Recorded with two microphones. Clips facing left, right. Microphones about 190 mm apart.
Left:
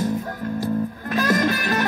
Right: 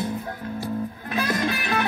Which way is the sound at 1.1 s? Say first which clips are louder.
Left 5 dB; 45° left (ahead or behind).